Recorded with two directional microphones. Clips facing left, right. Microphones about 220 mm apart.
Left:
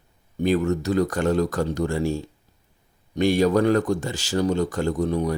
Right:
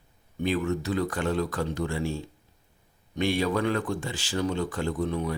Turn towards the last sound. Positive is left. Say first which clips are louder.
# left 5 dB
turn(degrees=40)  # may be behind; listen again after turning